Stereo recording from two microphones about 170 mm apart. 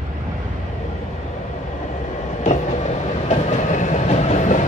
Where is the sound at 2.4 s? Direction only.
40° left (ahead or behind).